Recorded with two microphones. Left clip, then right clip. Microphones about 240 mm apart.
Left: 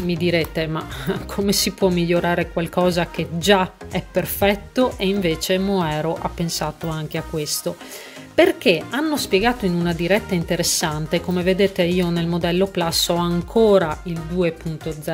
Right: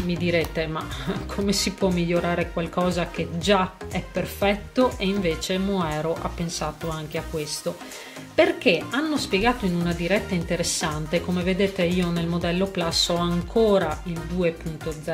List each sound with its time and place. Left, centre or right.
0.1 s speech: left